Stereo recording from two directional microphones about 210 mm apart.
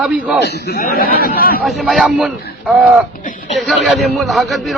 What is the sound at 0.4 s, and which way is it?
A man's voice, 50° left (ahead or behind).